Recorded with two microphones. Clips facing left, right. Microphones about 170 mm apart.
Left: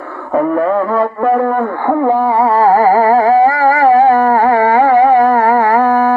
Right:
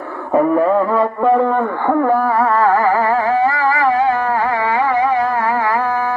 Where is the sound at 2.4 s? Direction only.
35° left (ahead or behind).